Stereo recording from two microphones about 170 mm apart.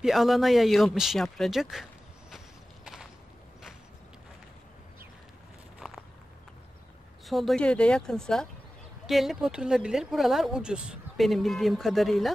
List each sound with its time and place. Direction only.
0.0 s speech: centre (ahead or behind)
2.3 s a sound: centre (ahead or behind)
5.8 s walk: centre (ahead or behind)
7.2 s speech: centre (ahead or behind)